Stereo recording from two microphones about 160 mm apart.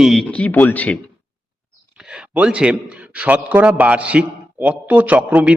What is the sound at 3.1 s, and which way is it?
Speech, 10° right (ahead or behind).